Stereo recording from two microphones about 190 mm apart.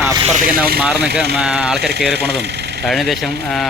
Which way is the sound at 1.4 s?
5° right (ahead or behind).